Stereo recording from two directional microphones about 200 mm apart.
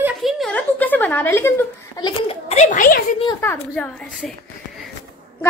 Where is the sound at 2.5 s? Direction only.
40° left (ahead or behind).